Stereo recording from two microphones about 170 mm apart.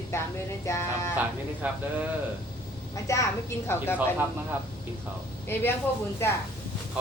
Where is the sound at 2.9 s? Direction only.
20° left (ahead or behind).